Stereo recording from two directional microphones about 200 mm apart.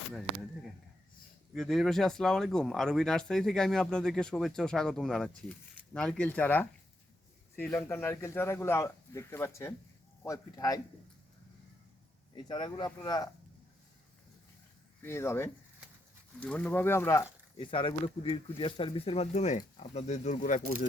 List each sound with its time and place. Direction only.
1.5 s speech: centre (ahead or behind); by 10.8 s 15° left (ahead or behind)
12.5 s speech: 20° left (ahead or behind)
15.0 s speech: 10° left (ahead or behind)
17.6 s speech: 25° left (ahead or behind)